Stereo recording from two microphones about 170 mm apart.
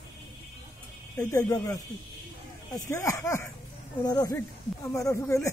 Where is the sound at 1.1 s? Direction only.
15° left (ahead or behind).